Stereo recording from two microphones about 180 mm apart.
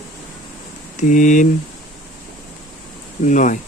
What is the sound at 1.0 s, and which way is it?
Speech, 45° left (ahead or behind).